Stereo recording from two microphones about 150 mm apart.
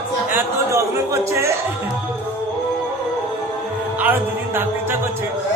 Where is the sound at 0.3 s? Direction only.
15° right (ahead or behind).